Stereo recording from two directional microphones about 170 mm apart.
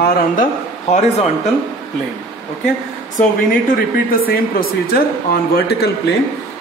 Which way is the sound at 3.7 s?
60° left (ahead or behind).